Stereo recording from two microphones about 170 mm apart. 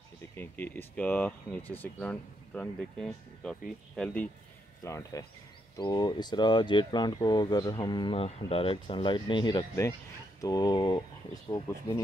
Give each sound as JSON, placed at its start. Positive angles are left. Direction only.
{"t": 0.4, "sound": "speech", "side_deg": 10}